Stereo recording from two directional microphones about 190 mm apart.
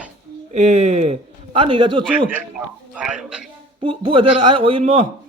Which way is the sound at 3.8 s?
30° right (ahead or behind).